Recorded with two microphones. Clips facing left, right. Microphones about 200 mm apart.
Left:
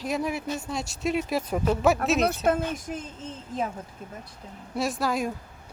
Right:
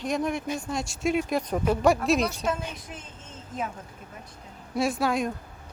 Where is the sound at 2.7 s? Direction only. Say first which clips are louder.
Left 8 dB; 40° left (ahead or behind).